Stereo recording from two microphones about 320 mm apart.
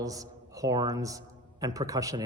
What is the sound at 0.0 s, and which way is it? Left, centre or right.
A man's voice, centre.